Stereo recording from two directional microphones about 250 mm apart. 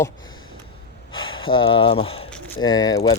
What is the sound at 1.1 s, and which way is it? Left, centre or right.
Speech, centre.